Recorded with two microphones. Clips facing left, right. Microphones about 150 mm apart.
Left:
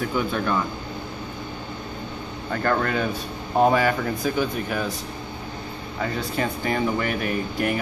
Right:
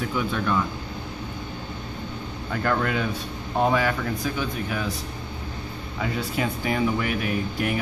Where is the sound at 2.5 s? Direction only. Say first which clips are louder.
Left 2 dB; 5° right (ahead or behind).